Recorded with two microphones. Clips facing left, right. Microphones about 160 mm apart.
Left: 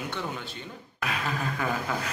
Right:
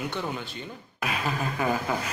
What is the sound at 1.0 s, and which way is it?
Speech, 15° right (ahead or behind).